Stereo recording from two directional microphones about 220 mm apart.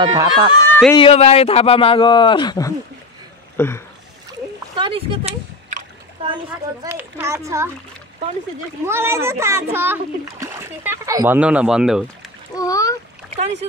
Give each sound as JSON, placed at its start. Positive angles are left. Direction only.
{"t": 0.0, "sound": "speech", "side_deg": -20}
{"t": 0.9, "sound": "speech", "side_deg": 25}
{"t": 4.7, "sound": "speech", "side_deg": -25}
{"t": 6.8, "sound": "a child's voice", "side_deg": -10}
{"t": 8.8, "sound": "a child's voice", "side_deg": -10}
{"t": 12.5, "sound": "a child's voice", "side_deg": 15}